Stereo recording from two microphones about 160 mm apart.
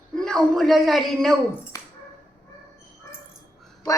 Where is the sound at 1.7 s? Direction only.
20° left (ahead or behind).